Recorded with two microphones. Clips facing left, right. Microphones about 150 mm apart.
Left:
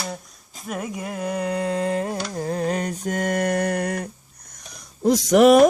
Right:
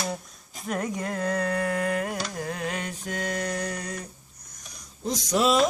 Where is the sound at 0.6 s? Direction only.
5° left (ahead or behind); by 2.2 s 25° left (ahead or behind).